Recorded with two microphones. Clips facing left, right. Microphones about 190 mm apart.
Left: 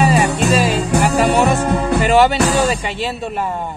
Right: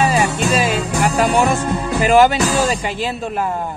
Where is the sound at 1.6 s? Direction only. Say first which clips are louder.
Left 4 dB; 65° left (ahead or behind).